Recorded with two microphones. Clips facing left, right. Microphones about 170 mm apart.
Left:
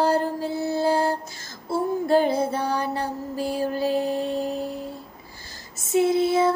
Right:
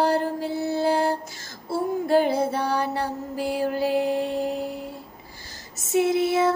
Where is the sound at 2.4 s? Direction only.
15° left (ahead or behind).